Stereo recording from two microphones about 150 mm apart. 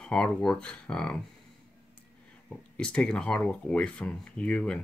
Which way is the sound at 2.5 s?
5° left (ahead or behind).